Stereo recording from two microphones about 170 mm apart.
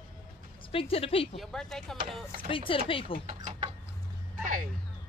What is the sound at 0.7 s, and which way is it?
Speech, 35° left (ahead or behind).